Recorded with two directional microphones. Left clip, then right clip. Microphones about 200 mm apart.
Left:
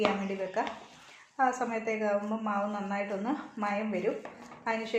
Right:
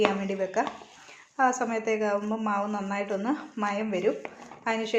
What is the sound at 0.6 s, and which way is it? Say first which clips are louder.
A woman's voice: right 4 dB; 45° right (ahead or behind).